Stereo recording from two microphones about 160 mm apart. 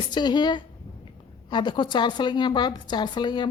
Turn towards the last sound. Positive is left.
turn(degrees=30)  # may be behind; listen again after turning